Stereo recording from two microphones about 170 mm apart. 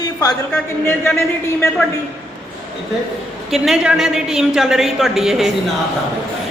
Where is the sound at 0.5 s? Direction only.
10° left (ahead or behind).